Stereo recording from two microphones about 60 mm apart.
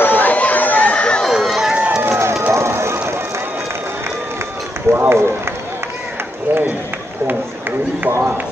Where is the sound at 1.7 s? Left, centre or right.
Centre.